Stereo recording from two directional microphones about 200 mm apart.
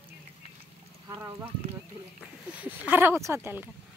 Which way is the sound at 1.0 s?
15° right (ahead or behind).